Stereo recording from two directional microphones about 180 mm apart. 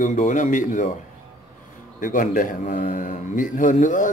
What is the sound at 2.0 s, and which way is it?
A man's voice, 50° left (ahead or behind).